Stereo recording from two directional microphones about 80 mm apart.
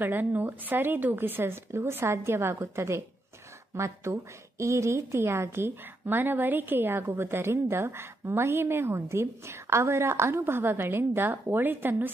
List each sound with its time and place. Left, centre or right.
0.0 s a woman's voice: right